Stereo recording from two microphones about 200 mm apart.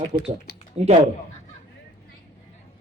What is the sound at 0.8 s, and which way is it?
Speech, 30° right (ahead or behind).